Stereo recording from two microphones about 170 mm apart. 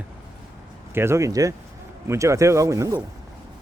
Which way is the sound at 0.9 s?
15° right (ahead or behind).